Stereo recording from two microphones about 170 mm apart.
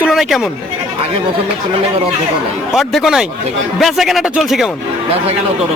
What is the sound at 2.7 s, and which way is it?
A man's voice, centre (ahead or behind).